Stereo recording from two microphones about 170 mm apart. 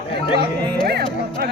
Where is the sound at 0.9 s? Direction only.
70° right (ahead or behind).